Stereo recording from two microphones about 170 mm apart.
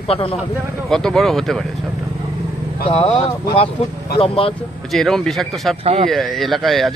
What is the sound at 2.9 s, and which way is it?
Speech, 35° left (ahead or behind).